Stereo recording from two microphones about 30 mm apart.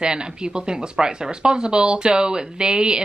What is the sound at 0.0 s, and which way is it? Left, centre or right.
Speech, right.